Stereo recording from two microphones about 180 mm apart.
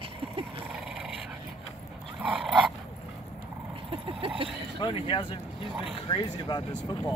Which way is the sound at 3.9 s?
30° right (ahead or behind).